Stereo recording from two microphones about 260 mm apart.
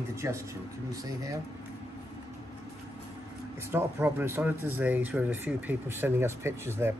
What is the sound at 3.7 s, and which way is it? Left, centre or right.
Speech, centre.